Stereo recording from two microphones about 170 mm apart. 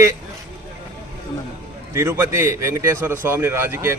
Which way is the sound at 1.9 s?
15° right (ahead or behind).